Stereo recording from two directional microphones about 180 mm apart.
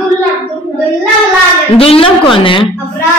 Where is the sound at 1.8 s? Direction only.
30° left (ahead or behind).